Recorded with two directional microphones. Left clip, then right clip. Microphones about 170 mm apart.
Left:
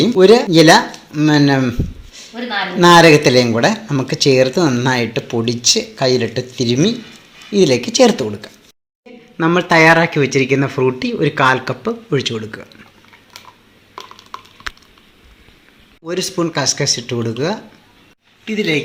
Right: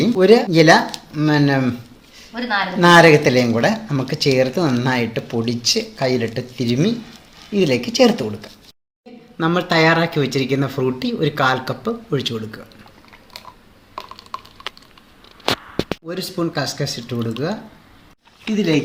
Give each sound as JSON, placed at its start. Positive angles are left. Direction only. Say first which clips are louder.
{"t": 0.0, "sound": "speech", "louder": "left 3 dB", "side_deg": 30}
{"t": 13.9, "sound": "typing", "louder": "right 1 dB", "side_deg": -30}
{"t": 16.0, "sound": "speech", "louder": "left 5 dB", "side_deg": 30}
{"t": 18.5, "sound": "speech", "louder": "left 2 dB", "side_deg": -45}